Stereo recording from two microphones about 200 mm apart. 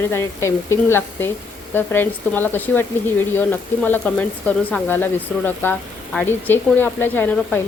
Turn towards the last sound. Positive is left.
turn(degrees=10)  # may be behind; listen again after turning